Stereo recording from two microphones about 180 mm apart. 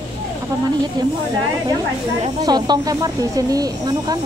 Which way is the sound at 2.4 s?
20° right (ahead or behind).